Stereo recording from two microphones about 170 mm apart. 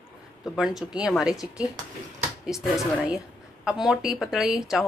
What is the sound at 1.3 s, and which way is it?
Speech, 20° left (ahead or behind).